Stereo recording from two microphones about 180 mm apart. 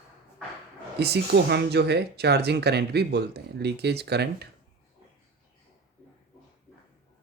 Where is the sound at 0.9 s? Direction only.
65° right (ahead or behind).